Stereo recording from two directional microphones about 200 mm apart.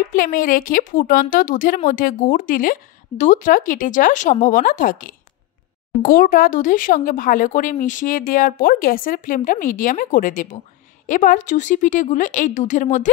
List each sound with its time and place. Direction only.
0.1 s a woman's voice: 45° left (ahead or behind)